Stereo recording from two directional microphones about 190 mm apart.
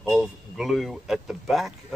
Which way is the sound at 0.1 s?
Centre (ahead or behind).